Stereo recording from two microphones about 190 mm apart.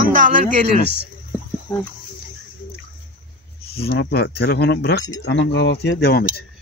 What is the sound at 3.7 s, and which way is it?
Speech, 55° left (ahead or behind).